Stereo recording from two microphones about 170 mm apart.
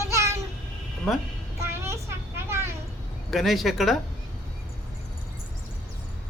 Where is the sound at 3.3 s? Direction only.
Centre (ahead or behind).